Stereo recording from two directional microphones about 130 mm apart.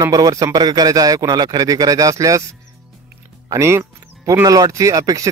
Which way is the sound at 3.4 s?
25° right (ahead or behind).